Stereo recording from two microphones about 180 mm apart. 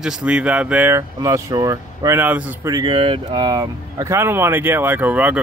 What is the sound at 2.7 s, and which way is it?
Speech, 25° right (ahead or behind).